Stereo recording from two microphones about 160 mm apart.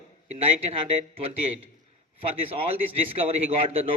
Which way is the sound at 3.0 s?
40° right (ahead or behind).